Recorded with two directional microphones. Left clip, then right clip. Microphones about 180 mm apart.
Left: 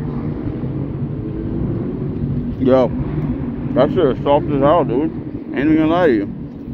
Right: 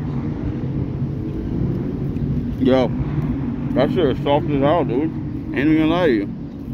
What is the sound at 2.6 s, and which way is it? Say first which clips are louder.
Speech: left 3 dB; 25° right (ahead or behind).